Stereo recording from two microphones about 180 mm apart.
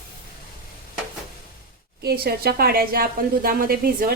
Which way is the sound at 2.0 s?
60° right (ahead or behind).